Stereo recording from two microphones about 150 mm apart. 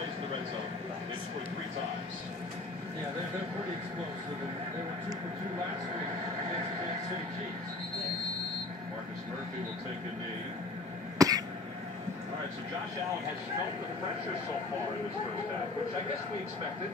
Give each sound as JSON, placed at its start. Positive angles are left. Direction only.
{"t": 11.1, "sound": "cough", "side_deg": -25}